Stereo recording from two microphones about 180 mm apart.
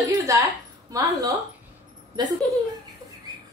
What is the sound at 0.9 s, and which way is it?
Speech, 20° right (ahead or behind).